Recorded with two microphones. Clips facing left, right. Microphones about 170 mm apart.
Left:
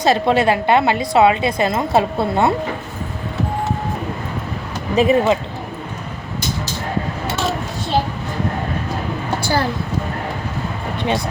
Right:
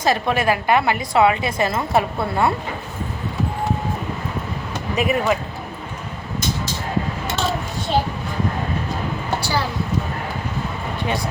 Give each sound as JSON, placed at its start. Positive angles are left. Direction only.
{"t": 0.0, "sound": "a woman's voice", "side_deg": 20}
{"t": 4.9, "sound": "a woman's voice", "side_deg": 25}
{"t": 9.4, "sound": "a sound", "side_deg": 50}